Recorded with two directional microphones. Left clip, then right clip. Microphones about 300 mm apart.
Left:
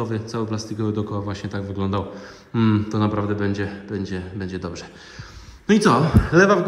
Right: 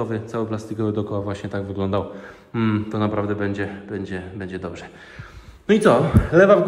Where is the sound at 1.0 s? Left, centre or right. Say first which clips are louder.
Right 2 dB; left.